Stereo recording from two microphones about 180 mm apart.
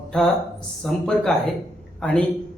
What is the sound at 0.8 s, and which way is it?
A man's voice, 5° left (ahead or behind).